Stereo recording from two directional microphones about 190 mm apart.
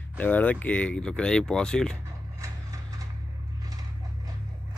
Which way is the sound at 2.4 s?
15° right (ahead or behind).